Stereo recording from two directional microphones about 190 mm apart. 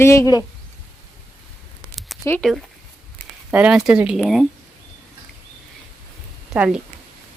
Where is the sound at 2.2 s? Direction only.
10° left (ahead or behind).